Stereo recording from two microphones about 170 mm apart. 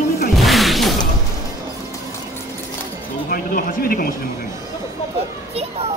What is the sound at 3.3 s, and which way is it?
Speech, 55° left (ahead or behind).